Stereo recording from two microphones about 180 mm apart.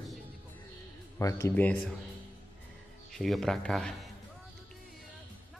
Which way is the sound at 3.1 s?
Centre (ahead or behind).